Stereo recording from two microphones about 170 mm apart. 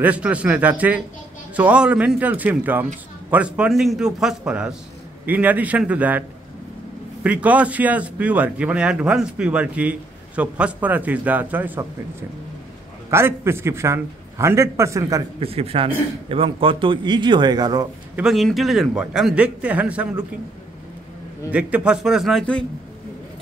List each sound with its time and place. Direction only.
0.0 s a man's voice: 5° right (ahead or behind)
7.2 s speech: 10° right (ahead or behind)
15.4 s a man's voice: 35° right (ahead or behind)
18.1 s a man's voice: centre (ahead or behind)
21.5 s a man's voice: 10° right (ahead or behind)